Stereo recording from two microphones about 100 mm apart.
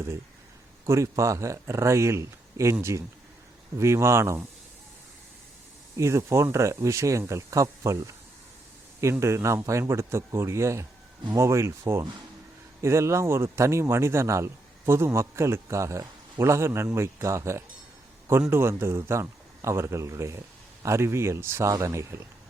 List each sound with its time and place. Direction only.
0.9 s a man's voice: 30° right (ahead or behind)
3.8 s a man's voice: 30° right (ahead or behind)
6.0 s a man's voice: 30° right (ahead or behind)
9.2 s a man's voice: 30° right (ahead or behind)